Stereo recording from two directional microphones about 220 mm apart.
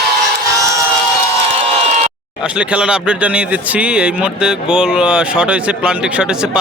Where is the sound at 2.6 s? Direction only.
5° right (ahead or behind).